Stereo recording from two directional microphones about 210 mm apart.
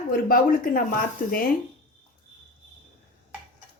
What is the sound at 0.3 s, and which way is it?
Speech, 45° left (ahead or behind).